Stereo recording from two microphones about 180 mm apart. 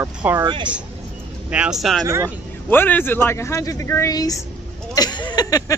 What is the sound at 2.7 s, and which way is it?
A man's voice, 10° left (ahead or behind).